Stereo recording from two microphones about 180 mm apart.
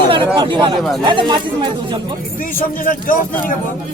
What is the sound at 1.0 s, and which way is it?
Speech, 25° right (ahead or behind).